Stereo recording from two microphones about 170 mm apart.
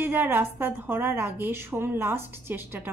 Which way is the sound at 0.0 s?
10° right (ahead or behind).